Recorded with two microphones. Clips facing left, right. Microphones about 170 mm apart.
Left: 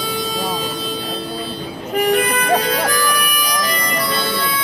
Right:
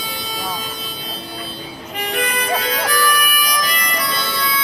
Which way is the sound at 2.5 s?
40° left (ahead or behind).